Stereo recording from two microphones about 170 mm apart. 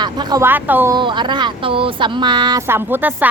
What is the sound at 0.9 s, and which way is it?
Speech, 25° right (ahead or behind).